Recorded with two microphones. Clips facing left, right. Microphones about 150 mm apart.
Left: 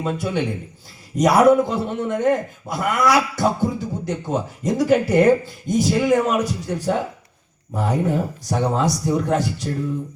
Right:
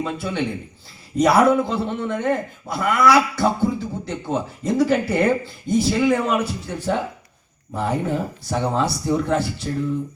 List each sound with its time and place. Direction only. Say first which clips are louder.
0.0 s a man's voice: left 2 dB; 15° left (ahead or behind)